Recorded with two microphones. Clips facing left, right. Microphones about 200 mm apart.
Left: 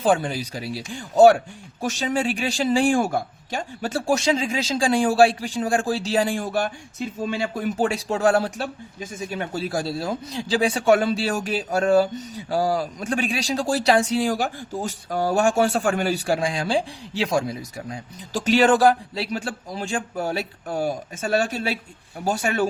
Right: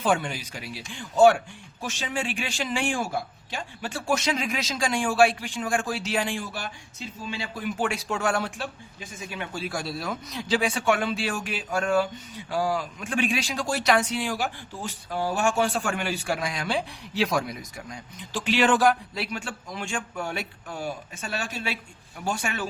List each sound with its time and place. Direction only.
0.0 s speech: 35° left (ahead or behind)
3.0 s speech: 50° left (ahead or behind)